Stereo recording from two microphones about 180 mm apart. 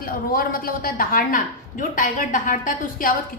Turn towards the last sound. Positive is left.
turn(degrees=50)  # may be behind; listen again after turning